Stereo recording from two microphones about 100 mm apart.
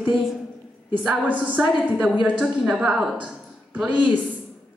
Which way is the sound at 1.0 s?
15° right (ahead or behind).